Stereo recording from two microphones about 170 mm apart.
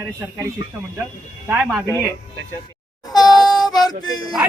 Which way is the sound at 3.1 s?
25° left (ahead or behind).